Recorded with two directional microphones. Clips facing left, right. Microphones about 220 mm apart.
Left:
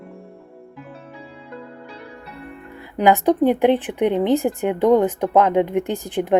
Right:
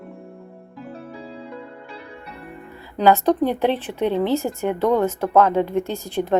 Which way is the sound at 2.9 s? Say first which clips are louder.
Left 1 dB; 15° left (ahead or behind).